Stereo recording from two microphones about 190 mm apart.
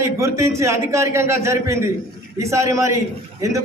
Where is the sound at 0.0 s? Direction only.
15° right (ahead or behind).